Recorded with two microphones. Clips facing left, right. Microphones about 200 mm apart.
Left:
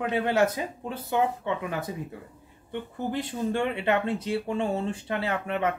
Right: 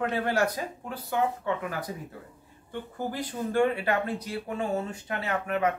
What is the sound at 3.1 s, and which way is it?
Speech, 25° left (ahead or behind).